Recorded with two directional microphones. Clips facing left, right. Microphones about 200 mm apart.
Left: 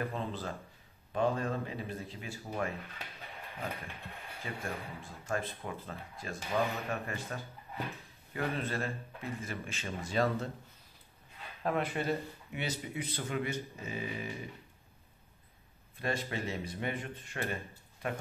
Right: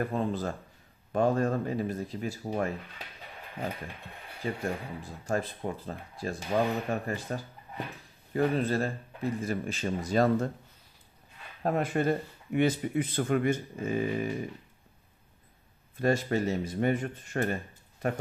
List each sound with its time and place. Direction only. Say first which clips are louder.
0.0 s speech: right 7 dB; 45° right (ahead or behind)
4.4 s speech: right 8 dB; 35° right (ahead or behind)
11.6 s speech: right 5 dB; 45° right (ahead or behind)
16.0 s speech: right 9 dB; 45° right (ahead or behind)